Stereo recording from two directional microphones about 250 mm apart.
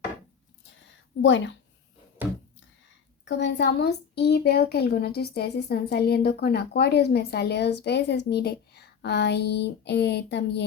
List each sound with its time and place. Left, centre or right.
1.2 s a woman's voice: left
3.2 s a woman's voice: left